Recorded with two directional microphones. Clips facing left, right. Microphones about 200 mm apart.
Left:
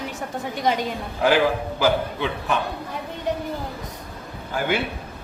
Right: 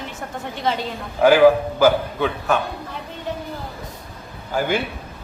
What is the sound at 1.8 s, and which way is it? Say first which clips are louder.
Speech: right 5 dB; 45° right (ahead or behind).